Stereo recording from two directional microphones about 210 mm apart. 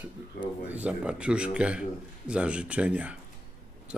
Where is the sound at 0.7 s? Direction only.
5° right (ahead or behind).